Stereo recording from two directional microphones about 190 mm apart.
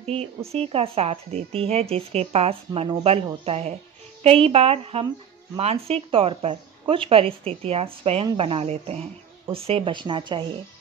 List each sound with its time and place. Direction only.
0.0 s speech: 35° right (ahead or behind)